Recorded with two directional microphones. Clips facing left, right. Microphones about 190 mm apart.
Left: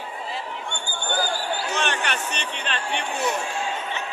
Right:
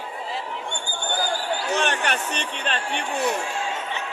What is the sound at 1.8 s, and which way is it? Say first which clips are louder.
Speech: right 2 dB; 50° right (ahead or behind).